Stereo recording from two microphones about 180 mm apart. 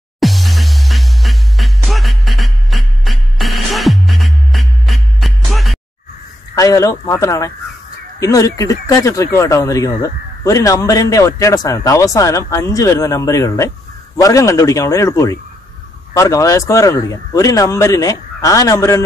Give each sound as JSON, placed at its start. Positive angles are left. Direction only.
{"t": 0.2, "sound": "music", "side_deg": 0}
{"t": 6.5, "sound": "speech", "side_deg": 20}